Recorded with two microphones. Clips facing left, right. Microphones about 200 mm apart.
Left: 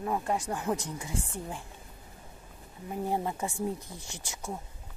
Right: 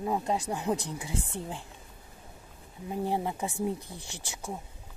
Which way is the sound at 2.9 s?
20° right (ahead or behind).